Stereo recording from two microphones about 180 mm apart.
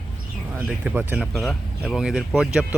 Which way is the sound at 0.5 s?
10° right (ahead or behind).